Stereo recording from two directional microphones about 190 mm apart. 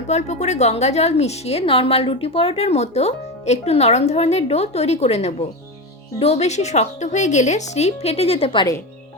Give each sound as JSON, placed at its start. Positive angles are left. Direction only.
{"t": 0.1, "sound": "speech", "side_deg": 35}